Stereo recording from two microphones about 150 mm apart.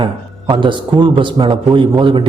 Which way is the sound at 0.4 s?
35° right (ahead or behind).